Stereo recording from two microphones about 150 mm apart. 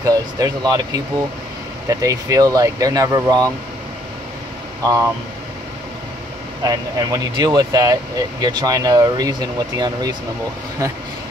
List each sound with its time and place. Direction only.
0.0 s speech: 25° right (ahead or behind)
6.6 s speech: 25° right (ahead or behind)